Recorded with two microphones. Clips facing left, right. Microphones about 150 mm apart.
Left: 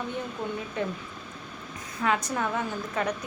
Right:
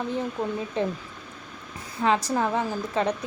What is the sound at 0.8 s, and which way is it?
Speech, 30° right (ahead or behind).